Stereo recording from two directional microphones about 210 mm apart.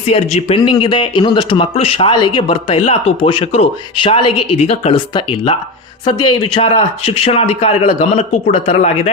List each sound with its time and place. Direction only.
0.1 s speech: 30° left (ahead or behind)